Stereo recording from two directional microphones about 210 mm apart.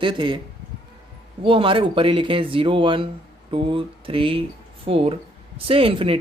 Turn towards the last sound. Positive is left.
turn(degrees=-25)  # may be behind; listen again after turning